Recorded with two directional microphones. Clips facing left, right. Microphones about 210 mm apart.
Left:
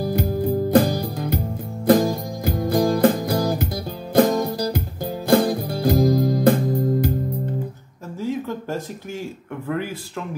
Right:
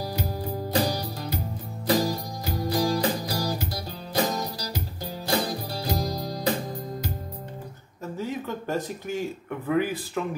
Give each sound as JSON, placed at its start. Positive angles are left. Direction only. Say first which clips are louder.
{"t": 0.0, "sound": "music", "louder": "left 9 dB", "side_deg": 55}
{"t": 8.2, "sound": "a sound", "louder": "left 6 dB", "side_deg": 0}
{"t": 9.7, "sound": "speech", "louder": "right 2 dB", "side_deg": -5}